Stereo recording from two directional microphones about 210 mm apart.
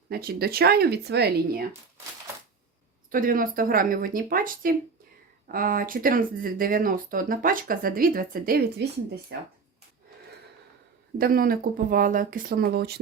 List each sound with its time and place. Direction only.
0.1 s speech: 45° right (ahead or behind)
3.1 s speech: 40° right (ahead or behind)
11.2 s speech: 45° right (ahead or behind)